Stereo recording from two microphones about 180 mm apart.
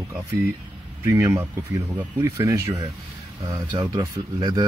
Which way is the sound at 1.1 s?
15° right (ahead or behind).